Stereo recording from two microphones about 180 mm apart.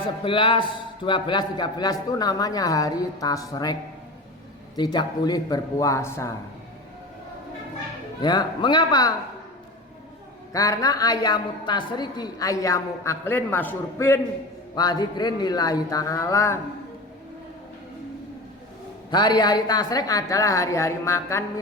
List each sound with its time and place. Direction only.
0.3 s a woman's voice: 30° left (ahead or behind)
4.8 s a man's voice: 25° left (ahead or behind)
8.2 s a woman's voice: 25° left (ahead or behind)
10.5 s a woman's voice: 20° left (ahead or behind)
19.1 s a woman's voice: 25° left (ahead or behind)